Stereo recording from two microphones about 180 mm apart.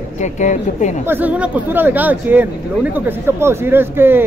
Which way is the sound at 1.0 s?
10° right (ahead or behind).